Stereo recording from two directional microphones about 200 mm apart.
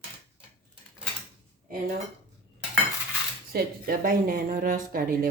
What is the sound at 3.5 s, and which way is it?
Speech, 45° right (ahead or behind).